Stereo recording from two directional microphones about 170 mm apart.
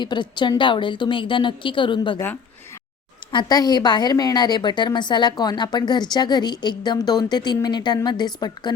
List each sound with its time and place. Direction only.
0.0 s a woman's voice: 25° left (ahead or behind)
3.3 s a woman's voice: 25° left (ahead or behind)